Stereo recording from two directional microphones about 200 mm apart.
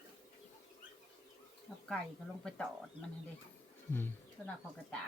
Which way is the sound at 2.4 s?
Centre (ahead or behind).